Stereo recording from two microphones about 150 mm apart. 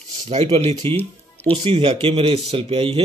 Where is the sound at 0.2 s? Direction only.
45° right (ahead or behind).